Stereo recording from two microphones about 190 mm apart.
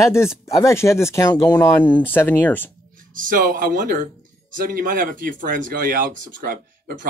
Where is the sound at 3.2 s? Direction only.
45° right (ahead or behind).